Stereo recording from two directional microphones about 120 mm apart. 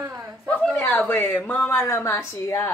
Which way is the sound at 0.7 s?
15° left (ahead or behind).